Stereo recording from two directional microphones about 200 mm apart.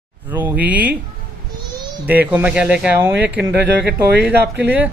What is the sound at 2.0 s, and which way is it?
Speech, 10° right (ahead or behind).